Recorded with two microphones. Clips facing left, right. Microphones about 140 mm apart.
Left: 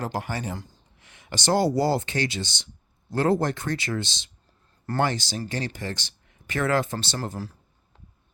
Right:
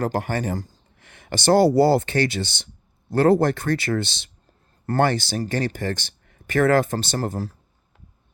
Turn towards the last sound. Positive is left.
turn(degrees=-45)  # may be behind; listen again after turning